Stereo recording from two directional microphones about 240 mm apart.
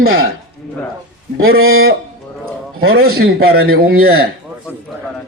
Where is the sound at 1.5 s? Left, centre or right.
Right.